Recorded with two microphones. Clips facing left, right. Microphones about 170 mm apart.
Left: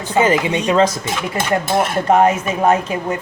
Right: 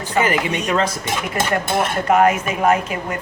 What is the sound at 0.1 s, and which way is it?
Speech, 25° left (ahead or behind).